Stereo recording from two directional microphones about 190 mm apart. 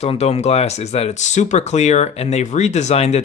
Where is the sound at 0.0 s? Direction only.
35° left (ahead or behind).